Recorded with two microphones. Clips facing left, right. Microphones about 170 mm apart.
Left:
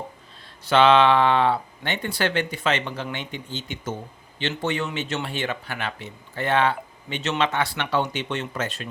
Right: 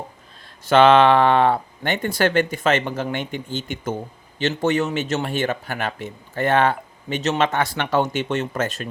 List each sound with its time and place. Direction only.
0.6 s speech: 50° right (ahead or behind)